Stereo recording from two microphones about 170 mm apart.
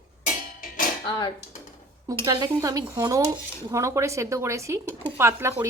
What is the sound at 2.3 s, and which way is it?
A woman's voice, 25° right (ahead or behind).